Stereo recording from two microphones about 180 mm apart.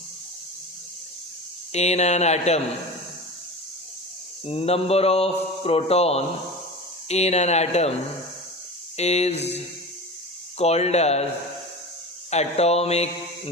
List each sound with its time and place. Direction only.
1.7 s a man's voice: 40° left (ahead or behind)
4.4 s a man's voice: 35° left (ahead or behind)
9.0 s a man's voice: 35° left (ahead or behind)
10.6 s a man's voice: 35° left (ahead or behind)
12.3 s a man's voice: 35° left (ahead or behind)